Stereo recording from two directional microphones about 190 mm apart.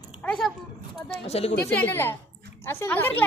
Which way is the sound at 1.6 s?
10° left (ahead or behind).